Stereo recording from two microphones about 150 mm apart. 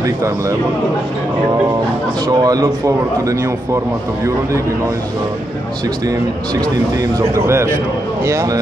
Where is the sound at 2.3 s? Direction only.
25° right (ahead or behind).